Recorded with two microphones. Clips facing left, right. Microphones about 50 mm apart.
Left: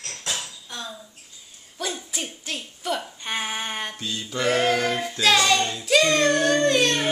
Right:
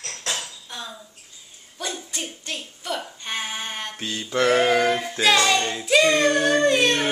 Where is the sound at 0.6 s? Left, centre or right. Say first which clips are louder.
Even; centre.